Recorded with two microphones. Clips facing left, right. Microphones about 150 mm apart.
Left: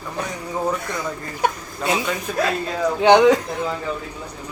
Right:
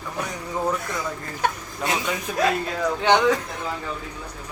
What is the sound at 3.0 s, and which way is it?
Speech, 15° left (ahead or behind).